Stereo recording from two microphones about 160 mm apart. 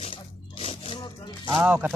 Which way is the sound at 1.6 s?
10° right (ahead or behind).